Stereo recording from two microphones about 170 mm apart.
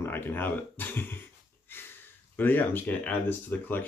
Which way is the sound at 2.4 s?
10° left (ahead or behind).